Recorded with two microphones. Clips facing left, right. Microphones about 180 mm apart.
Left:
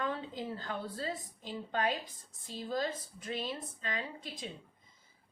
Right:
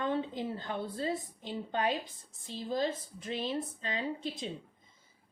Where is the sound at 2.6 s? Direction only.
25° right (ahead or behind).